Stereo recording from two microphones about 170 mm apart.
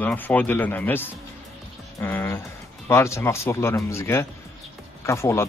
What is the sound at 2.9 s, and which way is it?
Speech, 15° left (ahead or behind).